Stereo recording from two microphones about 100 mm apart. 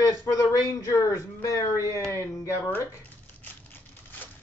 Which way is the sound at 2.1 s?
30° left (ahead or behind).